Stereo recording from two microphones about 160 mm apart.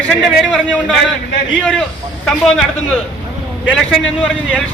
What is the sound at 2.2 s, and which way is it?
Speech, 5° left (ahead or behind).